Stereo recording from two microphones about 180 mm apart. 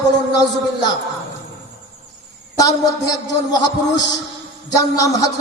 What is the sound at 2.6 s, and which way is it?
A man's voice, 20° left (ahead or behind).